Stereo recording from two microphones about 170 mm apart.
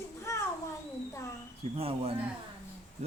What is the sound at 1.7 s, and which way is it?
Speech, 35° right (ahead or behind).